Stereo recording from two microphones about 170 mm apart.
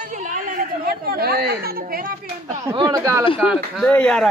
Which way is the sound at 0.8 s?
60° right (ahead or behind).